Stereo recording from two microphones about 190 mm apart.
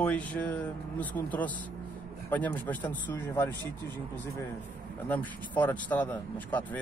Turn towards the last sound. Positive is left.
turn(degrees=10)  # may be behind; listen again after turning